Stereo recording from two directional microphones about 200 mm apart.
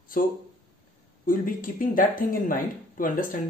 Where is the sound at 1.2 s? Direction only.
45° left (ahead or behind).